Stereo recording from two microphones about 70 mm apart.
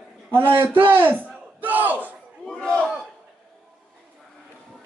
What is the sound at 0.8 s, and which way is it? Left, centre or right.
Battle cry, right.